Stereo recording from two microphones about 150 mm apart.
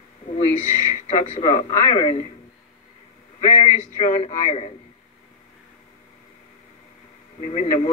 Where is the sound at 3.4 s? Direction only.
35° left (ahead or behind).